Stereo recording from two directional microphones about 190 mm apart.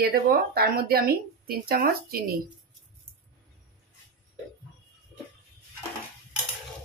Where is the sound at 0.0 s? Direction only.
55° right (ahead or behind).